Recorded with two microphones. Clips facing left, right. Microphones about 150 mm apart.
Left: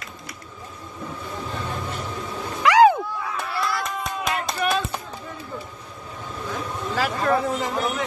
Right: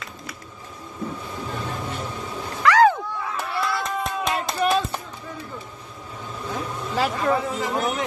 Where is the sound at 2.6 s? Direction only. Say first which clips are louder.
Left 2 dB; 15° left (ahead or behind).